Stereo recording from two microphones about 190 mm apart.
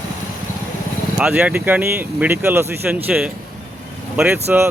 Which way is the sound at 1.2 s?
5° right (ahead or behind).